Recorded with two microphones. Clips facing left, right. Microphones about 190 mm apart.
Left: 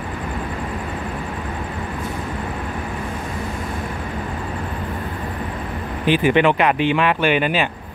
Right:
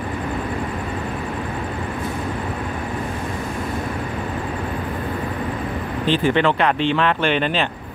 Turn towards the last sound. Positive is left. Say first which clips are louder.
# left 2 dB
turn(degrees=10)  # may be behind; listen again after turning